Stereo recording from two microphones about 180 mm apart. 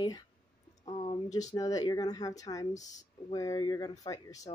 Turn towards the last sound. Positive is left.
turn(degrees=20)  # may be behind; listen again after turning